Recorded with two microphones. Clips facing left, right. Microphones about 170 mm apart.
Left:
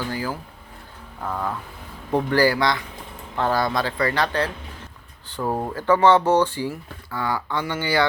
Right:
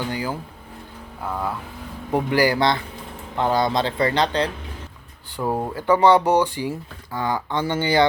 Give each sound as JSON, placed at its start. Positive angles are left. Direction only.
{"t": 0.1, "sound": "speech", "side_deg": -20}
{"t": 1.2, "sound": "speech", "side_deg": -10}
{"t": 2.6, "sound": "speech", "side_deg": -25}
{"t": 5.4, "sound": "speech", "side_deg": -5}